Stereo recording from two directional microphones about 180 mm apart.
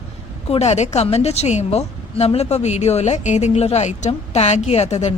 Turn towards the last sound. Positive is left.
turn(degrees=40)  # may be behind; listen again after turning